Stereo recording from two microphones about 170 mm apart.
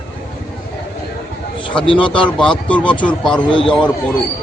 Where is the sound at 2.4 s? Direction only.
5° left (ahead or behind).